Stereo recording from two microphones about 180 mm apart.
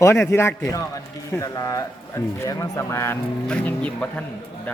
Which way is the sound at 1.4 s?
20° left (ahead or behind).